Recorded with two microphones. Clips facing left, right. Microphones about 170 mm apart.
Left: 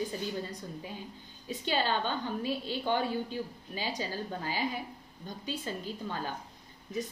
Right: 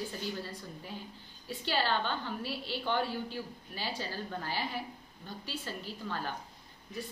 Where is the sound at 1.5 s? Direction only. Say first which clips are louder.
Left 1 dB; 15° left (ahead or behind).